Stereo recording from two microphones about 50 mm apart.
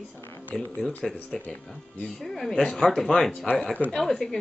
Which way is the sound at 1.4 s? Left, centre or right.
Left.